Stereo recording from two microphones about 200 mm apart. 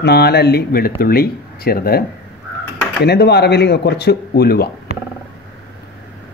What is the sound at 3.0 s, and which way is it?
Speech, 55° left (ahead or behind).